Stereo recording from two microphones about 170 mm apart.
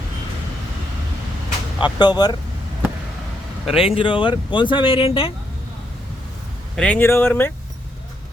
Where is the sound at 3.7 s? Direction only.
35° left (ahead or behind).